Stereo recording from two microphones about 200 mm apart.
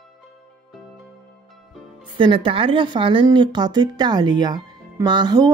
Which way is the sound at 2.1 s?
25° right (ahead or behind).